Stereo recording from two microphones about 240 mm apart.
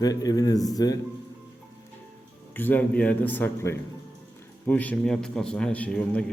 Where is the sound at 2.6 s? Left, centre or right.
Centre.